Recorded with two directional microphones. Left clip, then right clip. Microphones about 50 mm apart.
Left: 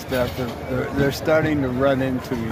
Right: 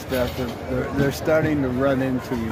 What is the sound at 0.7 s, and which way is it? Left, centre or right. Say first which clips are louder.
Speech: left 1 dB; centre.